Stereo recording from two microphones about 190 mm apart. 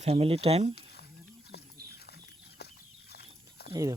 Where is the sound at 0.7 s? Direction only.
60° left (ahead or behind).